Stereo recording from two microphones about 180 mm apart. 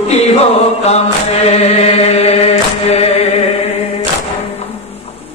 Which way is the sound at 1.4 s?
35° left (ahead or behind).